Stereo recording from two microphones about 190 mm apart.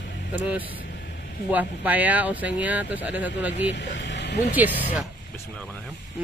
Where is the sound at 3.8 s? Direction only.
65° left (ahead or behind).